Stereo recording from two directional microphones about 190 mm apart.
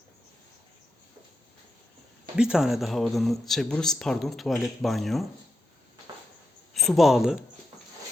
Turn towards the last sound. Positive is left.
turn(degrees=0)  # may be behind; listen again after turning